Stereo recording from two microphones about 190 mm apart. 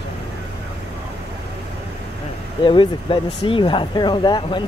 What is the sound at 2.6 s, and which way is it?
Speech, 25° left (ahead or behind).